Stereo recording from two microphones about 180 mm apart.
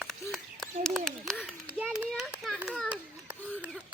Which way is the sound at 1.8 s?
Centre (ahead or behind).